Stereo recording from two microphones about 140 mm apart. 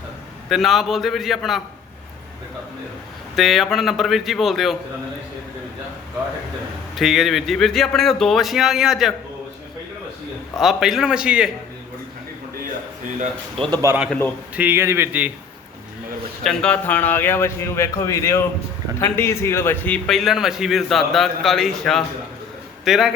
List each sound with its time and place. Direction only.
0.4 s a man's voice: centre (ahead or behind)
3.3 s a man's voice: centre (ahead or behind)
6.9 s a man's voice: centre (ahead or behind)
10.6 s a man's voice: centre (ahead or behind)
13.9 s a man's voice: 20° right (ahead or behind)
16.4 s a man's voice: 5° left (ahead or behind)
20.1 s a man's voice: centre (ahead or behind)